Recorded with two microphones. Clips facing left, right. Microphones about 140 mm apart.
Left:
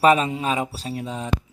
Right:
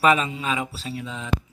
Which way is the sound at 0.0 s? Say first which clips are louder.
Left 3 dB; 35° left (ahead or behind).